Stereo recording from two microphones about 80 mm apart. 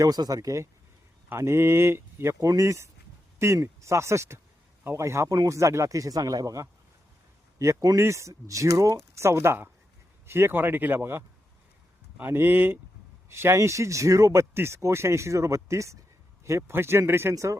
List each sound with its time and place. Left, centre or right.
0.0 s speech: right
7.9 s speech: right
17.3 s speech: right